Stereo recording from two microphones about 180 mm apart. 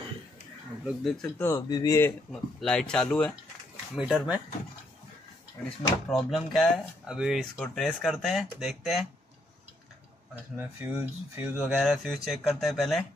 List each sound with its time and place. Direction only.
0.8 s speech: centre (ahead or behind)
1.4 s speech: 20° left (ahead or behind)
2.6 s speech: 5° left (ahead or behind)
6.0 s speech: centre (ahead or behind)
10.6 s speech: 10° right (ahead or behind)